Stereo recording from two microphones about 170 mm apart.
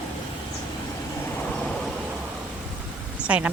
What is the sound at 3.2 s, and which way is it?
Speech, 5° right (ahead or behind).